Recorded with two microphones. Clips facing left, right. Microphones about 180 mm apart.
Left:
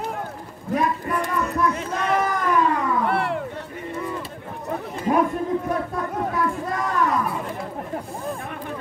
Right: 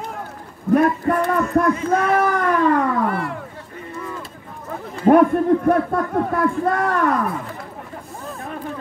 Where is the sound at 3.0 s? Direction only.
70° left (ahead or behind).